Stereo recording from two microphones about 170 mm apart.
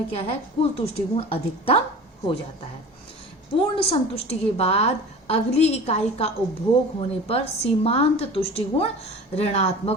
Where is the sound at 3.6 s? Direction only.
35° left (ahead or behind).